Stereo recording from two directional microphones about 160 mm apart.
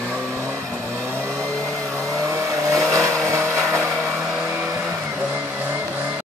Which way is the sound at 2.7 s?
20° right (ahead or behind).